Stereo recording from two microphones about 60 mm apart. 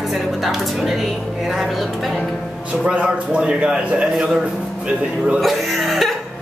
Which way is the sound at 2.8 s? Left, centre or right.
Centre.